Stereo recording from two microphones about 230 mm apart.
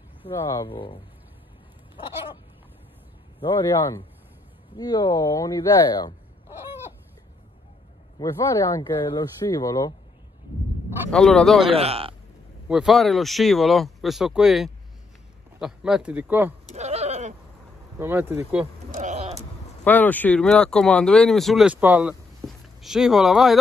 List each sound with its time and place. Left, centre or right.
0.2 s speech: centre
4.7 s speech: centre
8.2 s speech: centre
11.1 s speech: centre
11.6 s a man's voice: right
12.6 s a man's voice: centre
16.6 s bleat: right
17.9 s a man's voice: centre
18.9 s sheep: right
19.8 s speech: centre